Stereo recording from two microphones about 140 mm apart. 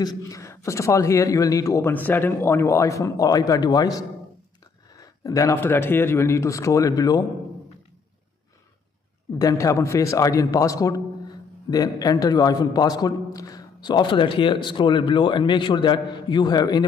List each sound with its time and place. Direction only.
0.0 s a man's voice: 25° left (ahead or behind)
9.4 s a man's voice: 25° left (ahead or behind)